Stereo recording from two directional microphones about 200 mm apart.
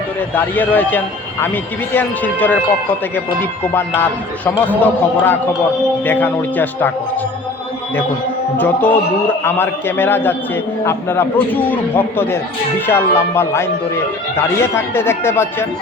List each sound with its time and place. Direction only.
0.3 s speech: 10° left (ahead or behind)
3.7 s speech: 10° left (ahead or behind)
8.5 s speech: 10° left (ahead or behind)